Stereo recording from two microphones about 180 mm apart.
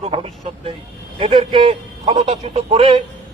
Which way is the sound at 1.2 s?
30° right (ahead or behind).